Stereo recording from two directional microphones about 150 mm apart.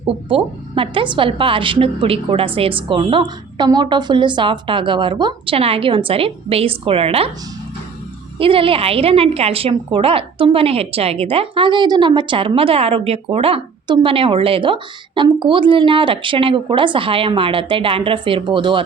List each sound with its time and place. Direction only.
0.1 s a woman's voice: 35° right (ahead or behind)
8.4 s a woman's voice: 35° right (ahead or behind)